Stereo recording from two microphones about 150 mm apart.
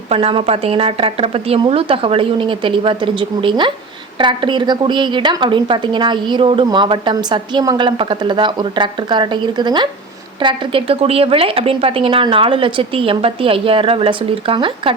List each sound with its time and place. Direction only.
0.1 s a woman's voice: 40° right (ahead or behind)